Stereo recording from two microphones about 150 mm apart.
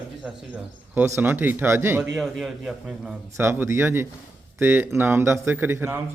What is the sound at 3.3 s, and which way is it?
A man's voice, 15° right (ahead or behind).